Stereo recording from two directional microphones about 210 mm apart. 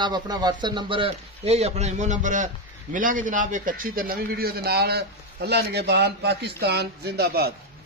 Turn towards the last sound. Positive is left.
turn(degrees=-50)  # may be behind; listen again after turning